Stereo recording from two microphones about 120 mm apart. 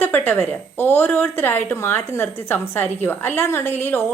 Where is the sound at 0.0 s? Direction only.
15° left (ahead or behind).